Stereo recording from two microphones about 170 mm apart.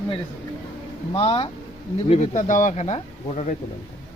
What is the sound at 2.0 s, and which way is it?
Speech, 45° left (ahead or behind).